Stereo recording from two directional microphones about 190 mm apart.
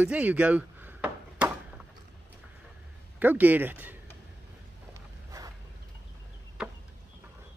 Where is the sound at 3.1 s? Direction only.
10° right (ahead or behind).